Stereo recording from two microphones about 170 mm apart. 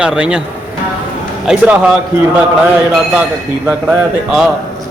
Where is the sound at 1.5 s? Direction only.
5° right (ahead or behind).